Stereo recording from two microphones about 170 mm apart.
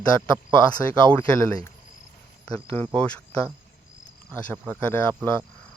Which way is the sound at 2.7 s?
10° left (ahead or behind).